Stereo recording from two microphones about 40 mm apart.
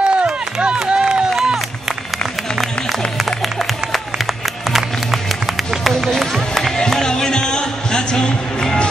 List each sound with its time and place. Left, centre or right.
0.0 s run: right
5.7 s run: centre
6.0 s music: centre; by 8.8 s left